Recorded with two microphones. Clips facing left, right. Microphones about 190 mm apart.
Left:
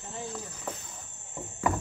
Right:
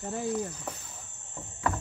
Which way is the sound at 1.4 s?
10° left (ahead or behind).